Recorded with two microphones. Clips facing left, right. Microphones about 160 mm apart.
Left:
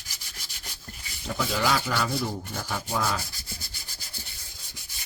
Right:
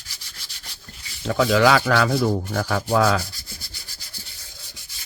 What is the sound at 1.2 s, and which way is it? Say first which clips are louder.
Rub: right 10 dB; 80° right.